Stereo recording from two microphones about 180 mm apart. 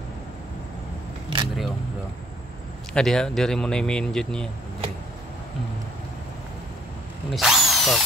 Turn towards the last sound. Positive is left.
turn(degrees=0)  # may be behind; listen again after turning